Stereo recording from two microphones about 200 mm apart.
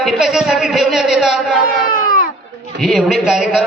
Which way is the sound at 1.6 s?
45° left (ahead or behind).